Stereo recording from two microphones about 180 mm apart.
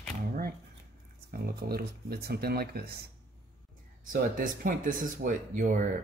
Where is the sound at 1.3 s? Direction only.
55° right (ahead or behind).